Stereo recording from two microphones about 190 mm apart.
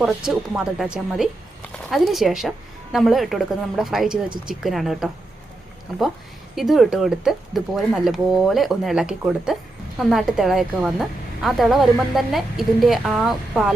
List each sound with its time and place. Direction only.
0.0 s speech: 5° right (ahead or behind)
6.6 s speech: centre (ahead or behind)